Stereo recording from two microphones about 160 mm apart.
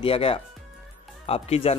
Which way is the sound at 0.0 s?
35° left (ahead or behind).